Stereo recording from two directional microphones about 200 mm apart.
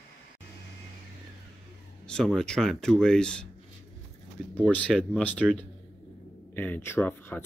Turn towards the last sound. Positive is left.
turn(degrees=10)  # may be behind; listen again after turning